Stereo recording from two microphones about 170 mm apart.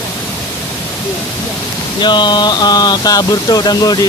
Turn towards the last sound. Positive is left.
turn(degrees=25)  # may be behind; listen again after turning